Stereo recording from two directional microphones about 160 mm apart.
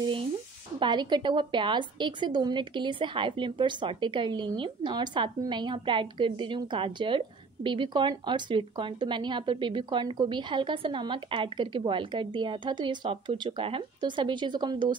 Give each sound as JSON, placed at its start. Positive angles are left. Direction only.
{"t": 0.7, "sound": "a woman's voice", "side_deg": -30}